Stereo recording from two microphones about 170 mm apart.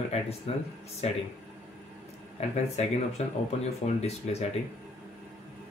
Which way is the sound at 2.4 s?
40° left (ahead or behind).